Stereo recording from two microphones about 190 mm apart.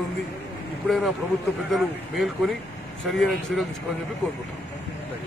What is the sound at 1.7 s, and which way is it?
Speech, centre (ahead or behind).